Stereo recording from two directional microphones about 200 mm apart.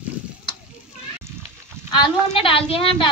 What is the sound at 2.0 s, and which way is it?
A woman's voice, 25° left (ahead or behind).